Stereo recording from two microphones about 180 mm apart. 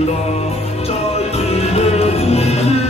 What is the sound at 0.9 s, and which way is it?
Music, 35° left (ahead or behind).